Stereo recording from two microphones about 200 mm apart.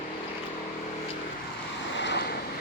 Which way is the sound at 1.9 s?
60° left (ahead or behind).